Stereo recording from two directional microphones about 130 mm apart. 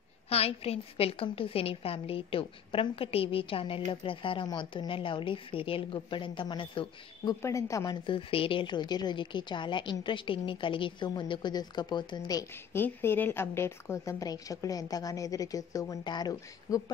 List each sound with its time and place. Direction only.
0.3 s a woman's voice: 50° left (ahead or behind)
7.4 s a woman's voice: 25° left (ahead or behind)
12.7 s a woman's voice: 15° left (ahead or behind)